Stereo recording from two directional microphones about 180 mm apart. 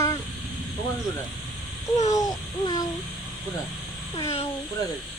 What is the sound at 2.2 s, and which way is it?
Babbling, 20° left (ahead or behind).